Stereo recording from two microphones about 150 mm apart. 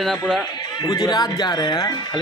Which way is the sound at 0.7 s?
25° left (ahead or behind).